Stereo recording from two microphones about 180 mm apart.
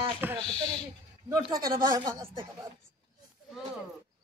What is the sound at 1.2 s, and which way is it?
A man's voice, 20° right (ahead or behind).